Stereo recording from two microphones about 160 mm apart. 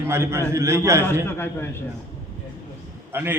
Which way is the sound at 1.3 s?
15° left (ahead or behind).